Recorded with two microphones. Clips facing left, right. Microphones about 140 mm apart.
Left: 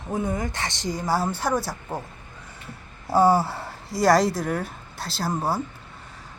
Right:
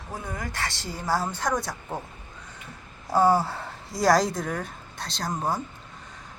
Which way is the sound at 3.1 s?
10° left (ahead or behind).